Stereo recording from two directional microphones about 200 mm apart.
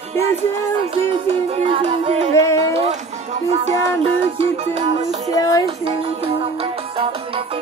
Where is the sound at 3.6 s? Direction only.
30° right (ahead or behind).